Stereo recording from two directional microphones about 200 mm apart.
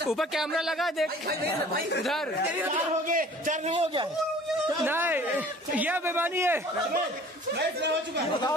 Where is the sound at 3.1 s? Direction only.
40° right (ahead or behind).